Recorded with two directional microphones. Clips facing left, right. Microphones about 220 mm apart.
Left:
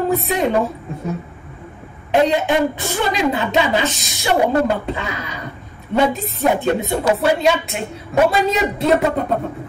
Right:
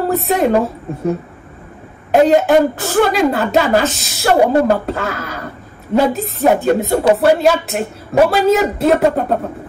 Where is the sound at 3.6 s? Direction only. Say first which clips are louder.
Right 5 dB; 50° right (ahead or behind).